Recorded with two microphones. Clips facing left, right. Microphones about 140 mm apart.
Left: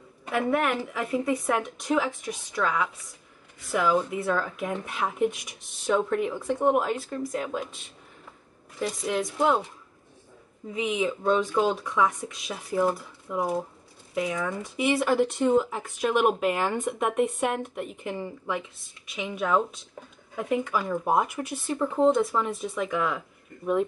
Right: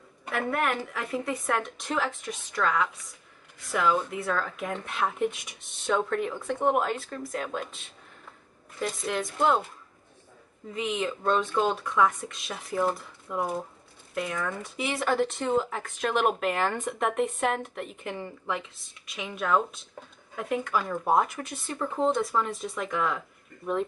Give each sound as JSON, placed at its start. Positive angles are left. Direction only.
{"t": 0.3, "sound": "speech", "side_deg": 5}
{"t": 10.7, "sound": "speech", "side_deg": 5}